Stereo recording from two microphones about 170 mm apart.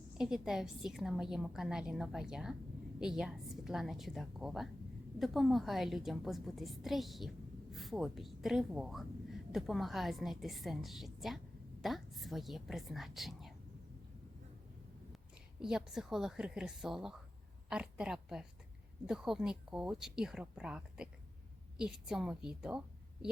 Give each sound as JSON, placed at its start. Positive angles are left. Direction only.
{"t": 0.2, "sound": "a woman's voice", "side_deg": -5}
{"t": 15.6, "sound": "a woman's voice", "side_deg": 0}